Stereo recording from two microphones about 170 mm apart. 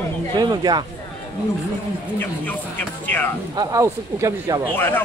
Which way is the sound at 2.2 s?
10° left (ahead or behind).